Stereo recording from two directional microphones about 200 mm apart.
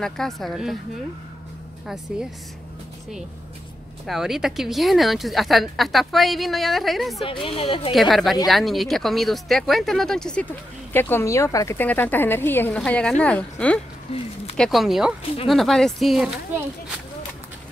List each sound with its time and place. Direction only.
0.0 s a woman's voice: centre (ahead or behind)
4.0 s a woman's voice: centre (ahead or behind)
7.2 s speech: 25° left (ahead or behind)
7.9 s a woman's voice: centre (ahead or behind)
14.1 s speech: 30° left (ahead or behind)
14.6 s a woman's voice: centre (ahead or behind)